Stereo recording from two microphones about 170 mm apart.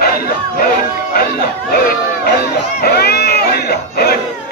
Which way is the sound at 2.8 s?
70° left (ahead or behind).